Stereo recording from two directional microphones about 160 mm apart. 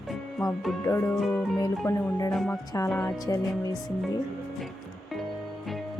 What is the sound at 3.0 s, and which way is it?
Music, 20° left (ahead or behind).